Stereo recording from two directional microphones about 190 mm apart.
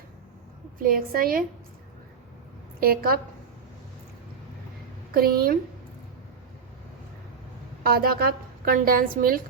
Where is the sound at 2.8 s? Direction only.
50° right (ahead or behind).